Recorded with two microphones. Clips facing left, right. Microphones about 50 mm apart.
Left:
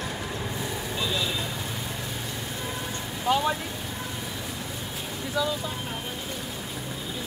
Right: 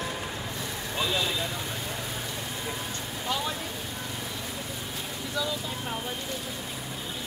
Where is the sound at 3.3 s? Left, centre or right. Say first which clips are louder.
Left 7 dB; centre.